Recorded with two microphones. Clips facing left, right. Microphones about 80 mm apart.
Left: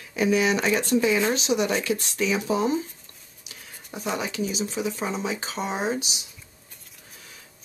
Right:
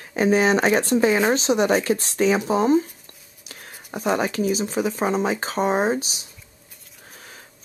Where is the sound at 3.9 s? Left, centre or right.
Right.